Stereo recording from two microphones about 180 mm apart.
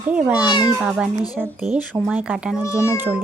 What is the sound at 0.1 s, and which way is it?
A woman's voice, 5° right (ahead or behind).